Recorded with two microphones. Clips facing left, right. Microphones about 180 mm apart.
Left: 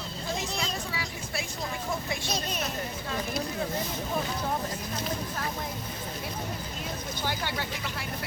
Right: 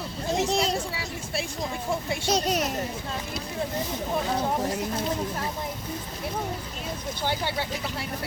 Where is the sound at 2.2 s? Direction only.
90° right.